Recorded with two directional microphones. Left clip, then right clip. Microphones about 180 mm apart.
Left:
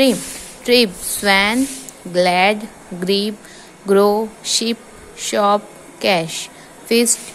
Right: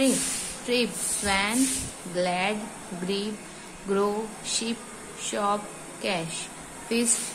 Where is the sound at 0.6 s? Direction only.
40° left (ahead or behind).